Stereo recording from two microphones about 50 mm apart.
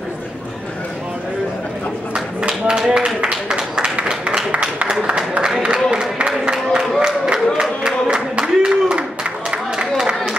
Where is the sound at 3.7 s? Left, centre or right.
Centre.